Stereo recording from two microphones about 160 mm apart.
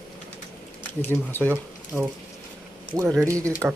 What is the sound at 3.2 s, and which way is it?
Speech, 20° right (ahead or behind).